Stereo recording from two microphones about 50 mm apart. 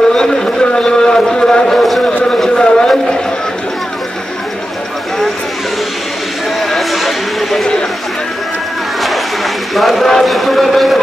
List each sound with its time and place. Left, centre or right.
0.1 s speech: centre
2.2 s a sound: centre
6.6 s speech: centre
9.8 s a man's voice: centre